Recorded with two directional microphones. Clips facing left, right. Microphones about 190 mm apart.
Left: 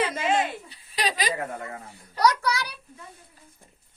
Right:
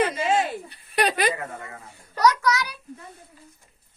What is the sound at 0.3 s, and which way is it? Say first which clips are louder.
Giggle: right 2 dB; 60° right (ahead or behind).